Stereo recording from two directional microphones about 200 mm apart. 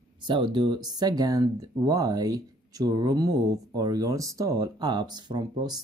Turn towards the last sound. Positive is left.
turn(degrees=-20)  # may be behind; listen again after turning